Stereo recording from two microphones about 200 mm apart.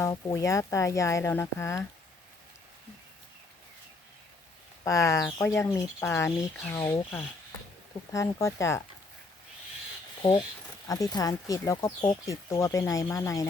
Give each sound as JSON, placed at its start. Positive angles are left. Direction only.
{"t": 0.0, "sound": "speech", "side_deg": 15}
{"t": 4.8, "sound": "speech", "side_deg": 15}
{"t": 8.1, "sound": "speech", "side_deg": 15}
{"t": 10.8, "sound": "speech", "side_deg": 15}